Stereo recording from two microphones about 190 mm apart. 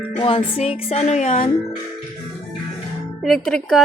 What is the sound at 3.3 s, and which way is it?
Speech, centre (ahead or behind).